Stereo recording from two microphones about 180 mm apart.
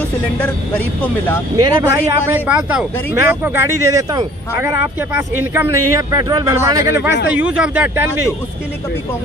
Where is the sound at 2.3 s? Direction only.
10° right (ahead or behind).